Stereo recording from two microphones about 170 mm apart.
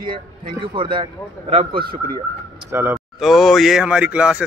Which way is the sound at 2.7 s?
15° right (ahead or behind).